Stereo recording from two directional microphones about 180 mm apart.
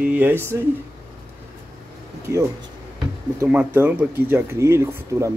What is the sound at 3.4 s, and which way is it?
Speech, 10° right (ahead or behind).